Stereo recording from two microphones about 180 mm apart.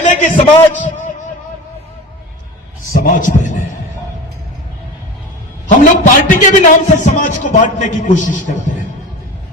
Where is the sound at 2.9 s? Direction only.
50° left (ahead or behind).